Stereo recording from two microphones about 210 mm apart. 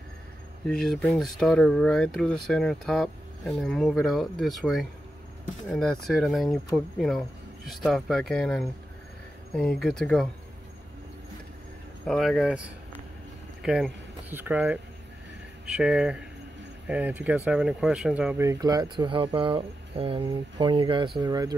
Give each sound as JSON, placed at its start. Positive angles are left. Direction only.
{"t": 0.7, "sound": "speech", "side_deg": 0}
{"t": 12.1, "sound": "speech", "side_deg": 0}